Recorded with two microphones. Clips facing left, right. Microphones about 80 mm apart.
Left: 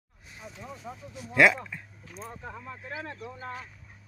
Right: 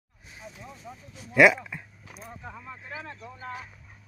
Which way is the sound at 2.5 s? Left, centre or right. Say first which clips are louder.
Left 1 dB; centre.